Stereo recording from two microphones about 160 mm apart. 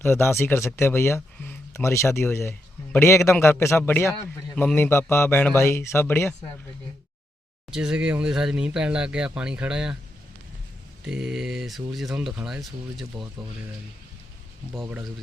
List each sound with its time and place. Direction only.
0.0 s speech: 15° left (ahead or behind)
7.7 s speech: 5° right (ahead or behind)
11.0 s speech: 5° right (ahead or behind)
14.7 s speech: 10° right (ahead or behind)